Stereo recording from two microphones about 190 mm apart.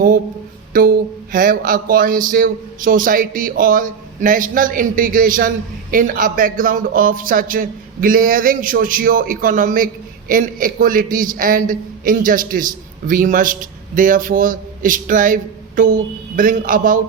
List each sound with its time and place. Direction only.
0.7 s speech: 50° right (ahead or behind)